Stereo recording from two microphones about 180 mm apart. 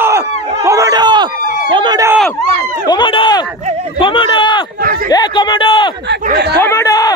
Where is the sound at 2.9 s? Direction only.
25° left (ahead or behind).